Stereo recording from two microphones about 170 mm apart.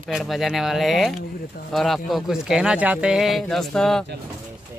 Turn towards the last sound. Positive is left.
turn(degrees=5)  # may be behind; listen again after turning